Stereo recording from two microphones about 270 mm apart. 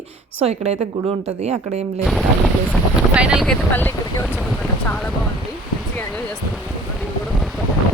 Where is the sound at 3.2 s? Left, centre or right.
Centre.